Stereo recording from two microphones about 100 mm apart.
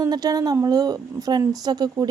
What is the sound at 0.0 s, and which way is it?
A woman's voice, 40° right (ahead or behind).